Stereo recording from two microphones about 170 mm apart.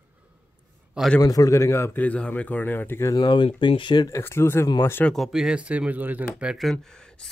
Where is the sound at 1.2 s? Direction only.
20° left (ahead or behind).